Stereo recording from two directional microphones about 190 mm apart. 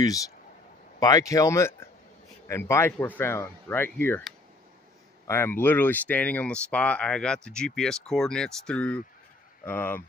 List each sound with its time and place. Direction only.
0.9 s speech: 20° left (ahead or behind)
5.2 s speech: 10° left (ahead or behind)